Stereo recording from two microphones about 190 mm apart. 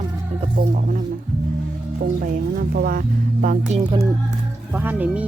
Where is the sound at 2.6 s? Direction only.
50° right (ahead or behind).